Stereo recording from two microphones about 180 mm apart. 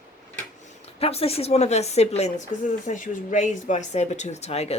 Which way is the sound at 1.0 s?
35° left (ahead or behind).